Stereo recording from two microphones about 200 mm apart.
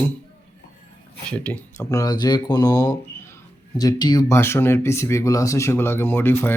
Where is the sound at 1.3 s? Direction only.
5° left (ahead or behind).